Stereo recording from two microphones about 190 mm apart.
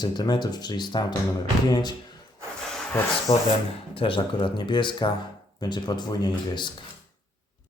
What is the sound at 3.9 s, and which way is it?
Speech, 25° left (ahead or behind).